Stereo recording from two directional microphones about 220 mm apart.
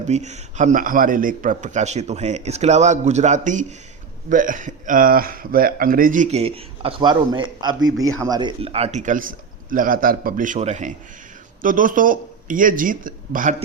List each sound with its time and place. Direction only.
0.0 s a man's voice: 30° right (ahead or behind)